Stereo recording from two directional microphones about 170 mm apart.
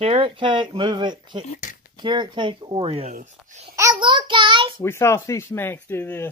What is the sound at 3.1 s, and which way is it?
Speech, 45° right (ahead or behind).